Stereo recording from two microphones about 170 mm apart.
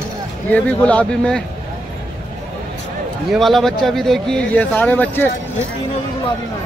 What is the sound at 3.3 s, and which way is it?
Speech, centre (ahead or behind).